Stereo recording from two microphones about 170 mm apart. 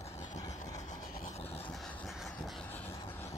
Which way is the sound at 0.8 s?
45° left (ahead or behind).